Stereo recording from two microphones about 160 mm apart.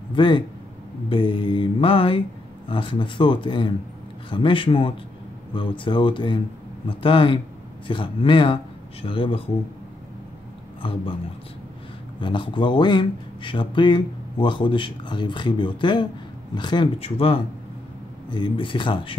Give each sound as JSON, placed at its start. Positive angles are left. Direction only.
{"t": 0.1, "sound": "speech", "side_deg": 30}
{"t": 1.0, "sound": "mantra", "side_deg": 30}
{"t": 5.5, "sound": "speech", "side_deg": 30}
{"t": 6.9, "sound": "mantra", "side_deg": 30}
{"t": 10.8, "sound": "mantra", "side_deg": 30}
{"t": 12.2, "sound": "speech", "side_deg": 30}
{"t": 16.5, "sound": "mantra", "side_deg": 30}
{"t": 18.3, "sound": "speech", "side_deg": 30}